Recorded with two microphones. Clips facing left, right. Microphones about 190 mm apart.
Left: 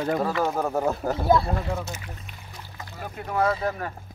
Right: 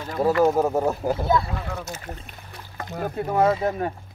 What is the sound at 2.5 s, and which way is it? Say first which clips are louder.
Boat: right 9 dB; 60° right (ahead or behind).